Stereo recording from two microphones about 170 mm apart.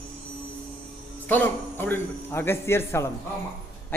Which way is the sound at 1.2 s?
10° left (ahead or behind).